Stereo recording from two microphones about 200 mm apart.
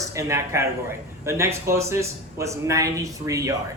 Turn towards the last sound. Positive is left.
turn(degrees=-15)  # may be behind; listen again after turning